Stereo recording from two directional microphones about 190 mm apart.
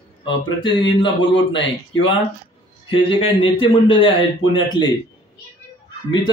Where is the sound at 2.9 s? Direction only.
25° left (ahead or behind).